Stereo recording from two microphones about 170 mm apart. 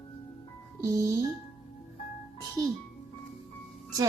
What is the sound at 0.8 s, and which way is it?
Speech, 20° right (ahead or behind).